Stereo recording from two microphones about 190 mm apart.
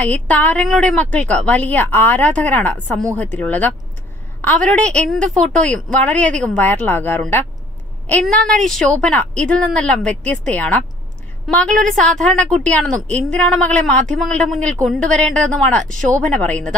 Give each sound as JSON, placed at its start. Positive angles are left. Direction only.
{"t": 0.0, "sound": "speech", "side_deg": 5}
{"t": 15.8, "sound": "speech", "side_deg": -40}
{"t": 16.1, "sound": "speech", "side_deg": 5}